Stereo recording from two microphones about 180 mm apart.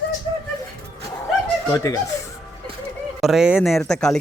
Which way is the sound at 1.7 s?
20° left (ahead or behind).